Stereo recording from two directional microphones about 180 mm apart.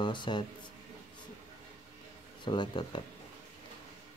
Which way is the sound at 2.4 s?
25° left (ahead or behind).